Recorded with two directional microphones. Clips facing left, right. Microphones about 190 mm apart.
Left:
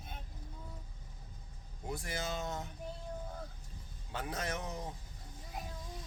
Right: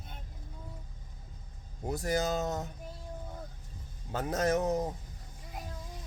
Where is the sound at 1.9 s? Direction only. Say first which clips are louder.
Right 9 dB; 40° right (ahead or behind).